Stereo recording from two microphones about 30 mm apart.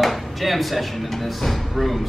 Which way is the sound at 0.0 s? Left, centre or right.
Centre.